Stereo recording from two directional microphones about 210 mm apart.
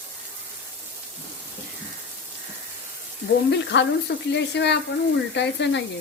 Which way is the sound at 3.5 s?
55° left (ahead or behind).